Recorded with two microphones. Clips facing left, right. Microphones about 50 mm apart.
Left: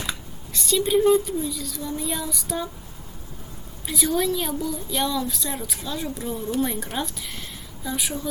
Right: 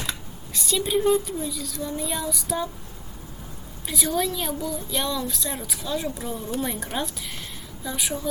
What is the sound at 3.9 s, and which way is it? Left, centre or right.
A woman's voice, centre.